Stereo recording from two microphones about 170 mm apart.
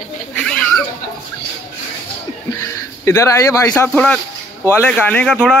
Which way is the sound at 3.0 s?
15° left (ahead or behind).